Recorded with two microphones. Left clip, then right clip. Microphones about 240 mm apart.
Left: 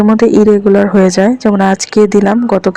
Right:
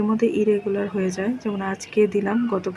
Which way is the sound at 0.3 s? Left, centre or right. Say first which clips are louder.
Left 14 dB; left.